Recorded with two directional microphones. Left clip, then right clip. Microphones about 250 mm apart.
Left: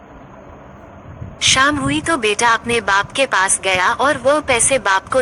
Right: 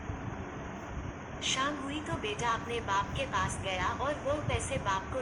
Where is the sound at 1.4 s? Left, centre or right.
Left.